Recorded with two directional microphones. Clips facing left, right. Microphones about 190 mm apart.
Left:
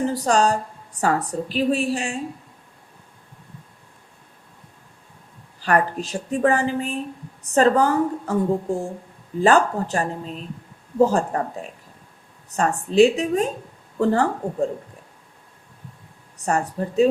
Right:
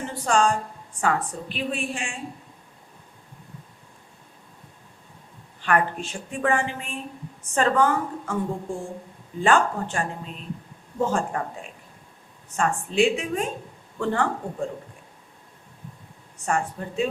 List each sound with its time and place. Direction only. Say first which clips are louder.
0.0 s a woman's voice: left 3 dB; 40° left (ahead or behind)
5.5 s a woman's voice: left 3 dB; 35° left (ahead or behind)
12.5 s a woman's voice: left 3 dB; 40° left (ahead or behind)
16.5 s a woman's voice: left 3 dB; 40° left (ahead or behind)